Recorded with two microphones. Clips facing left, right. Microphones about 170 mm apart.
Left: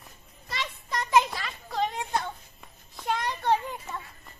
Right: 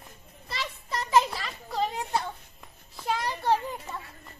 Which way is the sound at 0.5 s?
Centre (ahead or behind).